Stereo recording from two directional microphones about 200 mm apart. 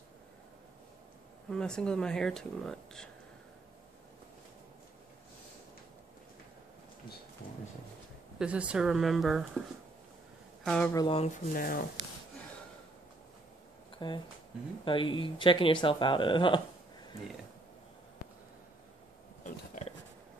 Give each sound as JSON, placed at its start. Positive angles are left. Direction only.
{"t": 1.5, "sound": "speech", "side_deg": 5}
{"t": 8.4, "sound": "speech", "side_deg": -5}
{"t": 10.6, "sound": "speech", "side_deg": 5}
{"t": 11.1, "sound": "speech", "side_deg": 35}
{"t": 13.9, "sound": "speech", "side_deg": 25}
{"t": 19.4, "sound": "a sound", "side_deg": 40}